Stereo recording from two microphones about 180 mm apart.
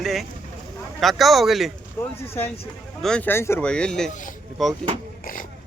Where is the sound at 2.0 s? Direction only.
10° left (ahead or behind).